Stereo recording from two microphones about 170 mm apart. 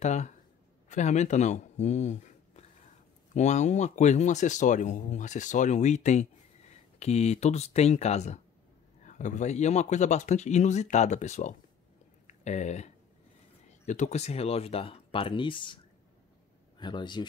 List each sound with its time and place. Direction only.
0.0 s speech: 45° left (ahead or behind); by 17.3 s 25° left (ahead or behind)